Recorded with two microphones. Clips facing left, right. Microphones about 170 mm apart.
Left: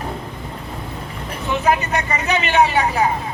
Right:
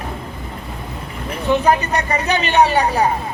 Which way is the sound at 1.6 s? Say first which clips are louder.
Right 2 dB; 35° right (ahead or behind).